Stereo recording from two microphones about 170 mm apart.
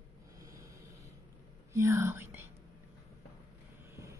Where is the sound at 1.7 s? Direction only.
15° right (ahead or behind).